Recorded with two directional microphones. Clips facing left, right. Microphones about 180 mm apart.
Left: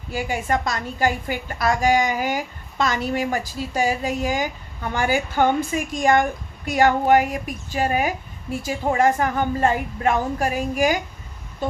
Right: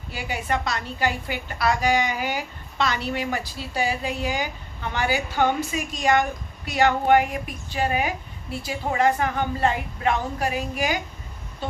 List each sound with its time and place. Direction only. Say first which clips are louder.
0.1 s a woman's voice: left 4 dB; 45° left (ahead or behind)